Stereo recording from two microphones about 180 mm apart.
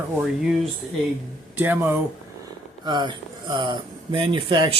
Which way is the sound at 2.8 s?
25° right (ahead or behind).